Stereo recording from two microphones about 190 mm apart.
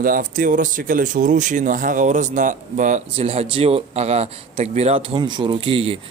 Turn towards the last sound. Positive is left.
turn(degrees=-30)  # may be behind; listen again after turning